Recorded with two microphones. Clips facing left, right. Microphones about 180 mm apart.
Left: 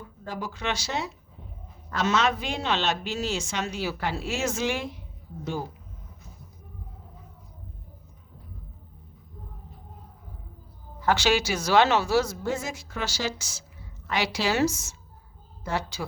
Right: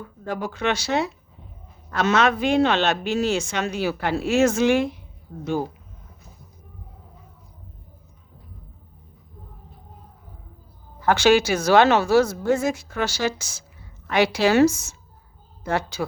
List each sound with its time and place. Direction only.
0.0 s a woman's voice: 60° right (ahead or behind)
11.0 s a woman's voice: 55° right (ahead or behind)